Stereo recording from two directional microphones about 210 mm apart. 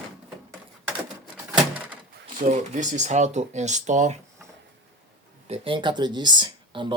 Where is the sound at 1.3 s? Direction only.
10° right (ahead or behind).